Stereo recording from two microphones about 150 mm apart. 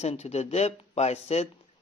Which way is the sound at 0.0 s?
45° left (ahead or behind).